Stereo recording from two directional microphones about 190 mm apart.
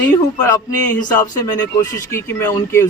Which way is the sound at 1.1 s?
20° left (ahead or behind).